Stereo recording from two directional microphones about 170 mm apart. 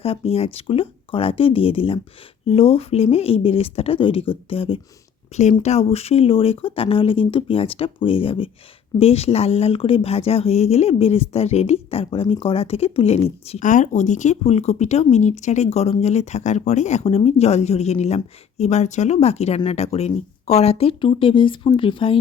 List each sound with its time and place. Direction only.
0.0 s speech: 35° left (ahead or behind)